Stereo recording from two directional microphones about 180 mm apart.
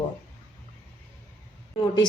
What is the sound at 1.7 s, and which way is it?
Speech, 25° left (ahead or behind).